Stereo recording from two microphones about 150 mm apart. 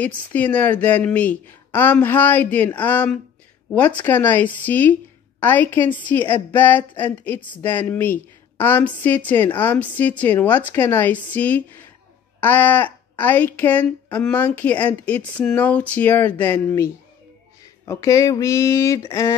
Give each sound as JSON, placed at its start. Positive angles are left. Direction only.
{"t": 0.0, "sound": "a woman's voice", "side_deg": 10}